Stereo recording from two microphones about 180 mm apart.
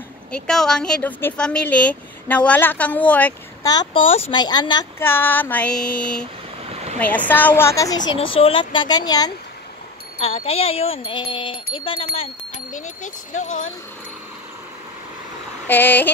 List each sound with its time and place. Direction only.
0.3 s a woman's voice: 5° left (ahead or behind)
3.6 s speech: 25° left (ahead or behind)
5.0 s a woman's voice: 10° left (ahead or behind)
6.6 s vehicle: 35° right (ahead or behind)
7.0 s a woman's voice: 10° left (ahead or behind)
8.0 s speech: 90° left
8.4 s speech: 30° left (ahead or behind)
10.2 s speech: 35° left (ahead or behind)
12.7 s speech: 45° left (ahead or behind)
15.6 s a woman's voice: 10° left (ahead or behind)